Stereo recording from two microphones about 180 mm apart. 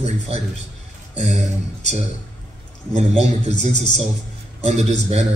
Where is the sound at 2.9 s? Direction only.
35° right (ahead or behind).